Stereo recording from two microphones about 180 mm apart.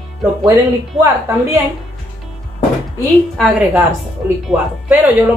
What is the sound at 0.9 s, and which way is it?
Speech, 15° right (ahead or behind).